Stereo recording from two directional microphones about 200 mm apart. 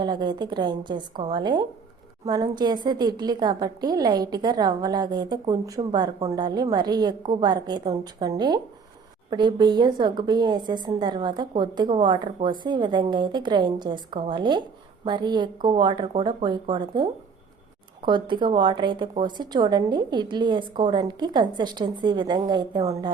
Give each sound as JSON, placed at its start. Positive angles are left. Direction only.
{"t": 0.0, "sound": "a woman's voice", "side_deg": -20}